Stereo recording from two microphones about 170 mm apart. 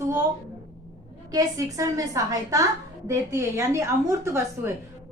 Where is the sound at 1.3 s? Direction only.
20° right (ahead or behind).